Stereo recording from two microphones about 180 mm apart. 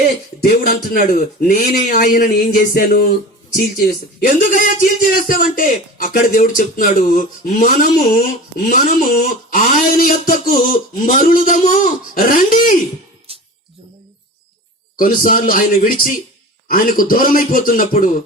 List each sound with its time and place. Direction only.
0.4 s a man's voice: 60° left (ahead or behind)
14.9 s a man's voice: 50° left (ahead or behind)